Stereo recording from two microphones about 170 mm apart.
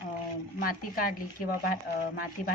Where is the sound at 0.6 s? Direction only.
55° left (ahead or behind).